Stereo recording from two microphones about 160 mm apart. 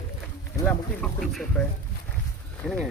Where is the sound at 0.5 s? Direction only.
10° left (ahead or behind).